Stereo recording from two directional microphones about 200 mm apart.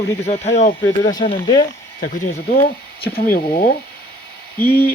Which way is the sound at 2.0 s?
45° left (ahead or behind).